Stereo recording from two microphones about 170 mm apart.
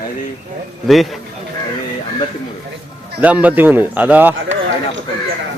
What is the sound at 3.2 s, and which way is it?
A man's voice, 10° right (ahead or behind).